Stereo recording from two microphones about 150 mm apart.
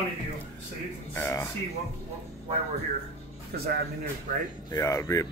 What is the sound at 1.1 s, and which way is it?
Speech, 15° left (ahead or behind).